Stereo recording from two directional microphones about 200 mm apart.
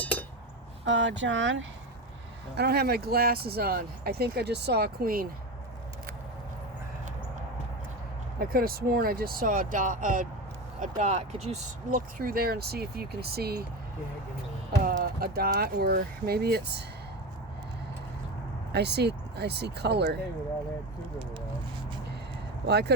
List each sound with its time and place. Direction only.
0.0 s chink: 10° left (ahead or behind)
0.9 s speech: 65° right (ahead or behind)
2.6 s speech: 50° right (ahead or behind)
8.4 s speech: 45° right (ahead or behind)
14.8 s speech: 45° right (ahead or behind)
18.7 s speech: 55° right (ahead or behind)
22.6 s speech: 55° right (ahead or behind)